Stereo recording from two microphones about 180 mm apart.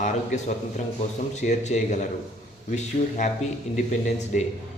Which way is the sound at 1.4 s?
40° left (ahead or behind).